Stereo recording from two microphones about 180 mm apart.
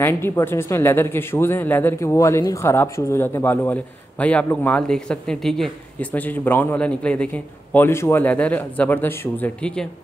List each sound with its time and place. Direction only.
0.0 s speech: 15° left (ahead or behind)